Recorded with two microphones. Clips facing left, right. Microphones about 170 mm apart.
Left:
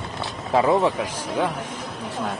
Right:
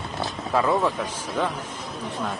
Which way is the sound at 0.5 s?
25° left (ahead or behind).